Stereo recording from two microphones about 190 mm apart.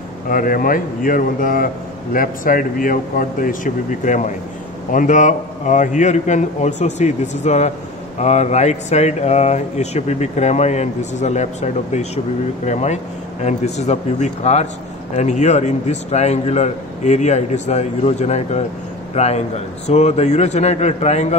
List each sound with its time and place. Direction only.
0.3 s speech: 45° left (ahead or behind)